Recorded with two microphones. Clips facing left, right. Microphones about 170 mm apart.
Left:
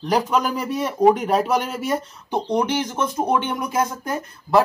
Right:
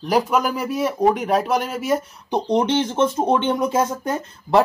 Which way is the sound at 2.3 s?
25° right (ahead or behind).